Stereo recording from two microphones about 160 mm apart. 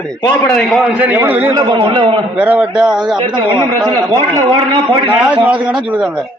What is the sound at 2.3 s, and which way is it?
Speech, 10° right (ahead or behind).